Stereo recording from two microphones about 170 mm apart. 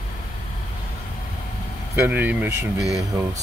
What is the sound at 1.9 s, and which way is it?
Speech, 10° right (ahead or behind).